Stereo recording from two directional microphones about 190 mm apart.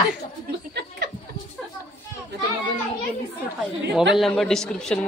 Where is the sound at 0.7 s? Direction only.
60° right (ahead or behind).